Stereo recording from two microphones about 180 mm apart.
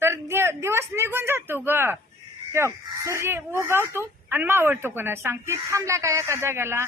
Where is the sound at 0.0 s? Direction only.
15° right (ahead or behind).